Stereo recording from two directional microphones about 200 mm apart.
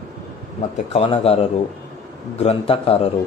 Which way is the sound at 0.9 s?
30° left (ahead or behind).